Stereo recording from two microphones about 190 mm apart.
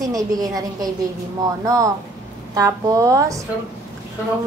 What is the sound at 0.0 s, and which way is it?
A woman's voice, 20° right (ahead or behind).